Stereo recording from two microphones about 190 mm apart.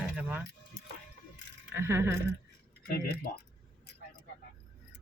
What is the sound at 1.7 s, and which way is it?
Speech, 15° right (ahead or behind).